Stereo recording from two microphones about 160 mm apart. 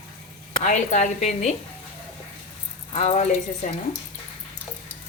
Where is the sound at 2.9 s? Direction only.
40° left (ahead or behind).